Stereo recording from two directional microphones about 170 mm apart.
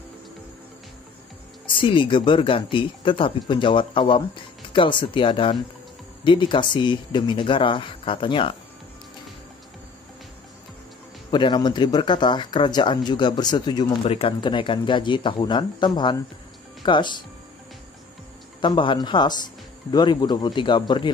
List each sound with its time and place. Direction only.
1.8 s speech: 30° left (ahead or behind)
11.2 s speech: 30° left (ahead or behind)
14.0 s speech: 35° left (ahead or behind)
18.6 s speech: 30° left (ahead or behind)